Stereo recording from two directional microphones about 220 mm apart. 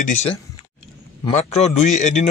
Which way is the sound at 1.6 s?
30° left (ahead or behind).